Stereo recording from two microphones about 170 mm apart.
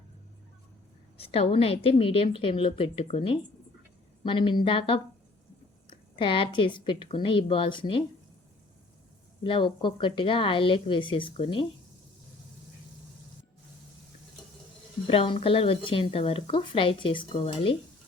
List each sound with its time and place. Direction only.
1.2 s a woman's voice: 35° left (ahead or behind)
9.4 s a woman's voice: 30° left (ahead or behind)
15.0 s speech: 35° left (ahead or behind)